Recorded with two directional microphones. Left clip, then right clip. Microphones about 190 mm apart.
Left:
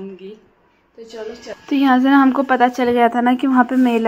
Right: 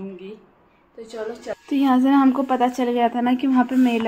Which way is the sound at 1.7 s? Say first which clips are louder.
Left 4 dB; 15° left (ahead or behind).